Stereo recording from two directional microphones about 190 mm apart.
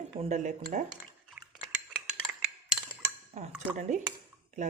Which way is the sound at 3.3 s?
35° right (ahead or behind).